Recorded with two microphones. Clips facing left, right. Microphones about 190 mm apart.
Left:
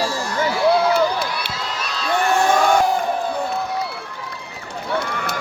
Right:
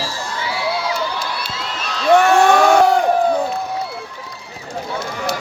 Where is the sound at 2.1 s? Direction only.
80° right.